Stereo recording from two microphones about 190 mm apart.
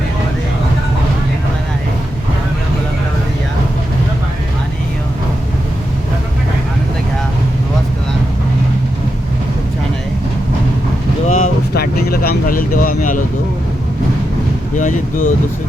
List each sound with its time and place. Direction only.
11.3 s vehicle: 45° left (ahead or behind)
14.8 s vehicle: 40° left (ahead or behind)